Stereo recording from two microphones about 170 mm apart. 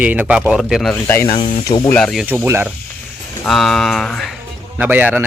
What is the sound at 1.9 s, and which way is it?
Speech, 5° left (ahead or behind).